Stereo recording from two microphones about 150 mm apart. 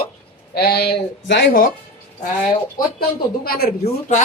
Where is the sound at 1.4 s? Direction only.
75° left (ahead or behind).